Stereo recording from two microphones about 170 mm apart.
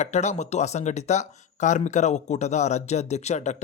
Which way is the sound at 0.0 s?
40° left (ahead or behind).